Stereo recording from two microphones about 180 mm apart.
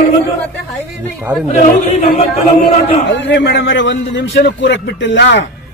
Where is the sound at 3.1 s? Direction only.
75° left (ahead or behind).